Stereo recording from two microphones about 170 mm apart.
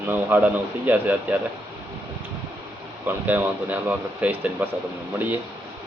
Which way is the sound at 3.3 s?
10° right (ahead or behind).